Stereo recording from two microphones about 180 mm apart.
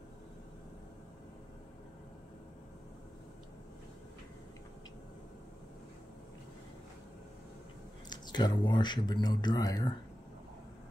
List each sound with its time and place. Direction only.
8.1 s speech: 25° left (ahead or behind)